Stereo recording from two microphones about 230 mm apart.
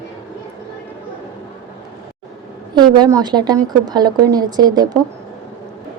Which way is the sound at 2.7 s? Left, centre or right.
Centre.